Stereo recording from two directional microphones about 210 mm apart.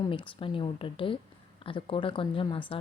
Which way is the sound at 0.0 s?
25° left (ahead or behind).